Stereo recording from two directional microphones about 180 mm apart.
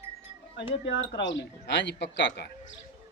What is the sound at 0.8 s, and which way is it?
A man's voice, 85° left.